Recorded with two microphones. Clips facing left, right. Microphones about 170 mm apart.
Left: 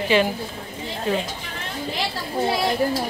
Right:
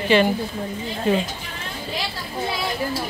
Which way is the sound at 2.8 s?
50° left (ahead or behind).